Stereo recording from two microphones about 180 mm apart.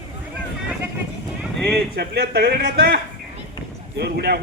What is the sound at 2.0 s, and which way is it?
A man's voice, 60° right (ahead or behind).